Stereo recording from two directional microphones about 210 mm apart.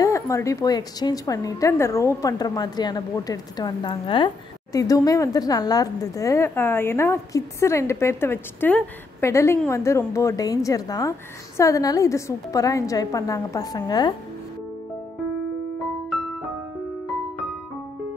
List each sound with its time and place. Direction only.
0.0 s speech: 15° left (ahead or behind)